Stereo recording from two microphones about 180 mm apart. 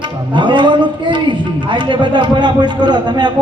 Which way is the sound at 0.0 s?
25° right (ahead or behind).